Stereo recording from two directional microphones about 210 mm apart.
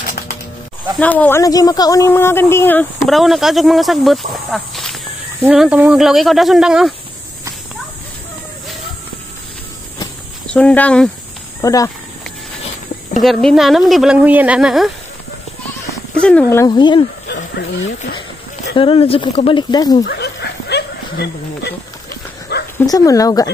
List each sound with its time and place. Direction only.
0.9 s speech: 5° left (ahead or behind)
10.5 s speech: 5° left (ahead or behind)
13.2 s speech: centre (ahead or behind)
16.2 s speech: 5° left (ahead or behind); by 17.0 s 20° left (ahead or behind)
18.8 s speech: 25° left (ahead or behind)
20.0 s a sound: 50° left (ahead or behind)
22.8 s speech: 15° left (ahead or behind)